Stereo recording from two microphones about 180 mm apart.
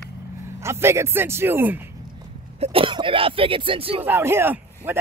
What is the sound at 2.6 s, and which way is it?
Speech, 30° right (ahead or behind).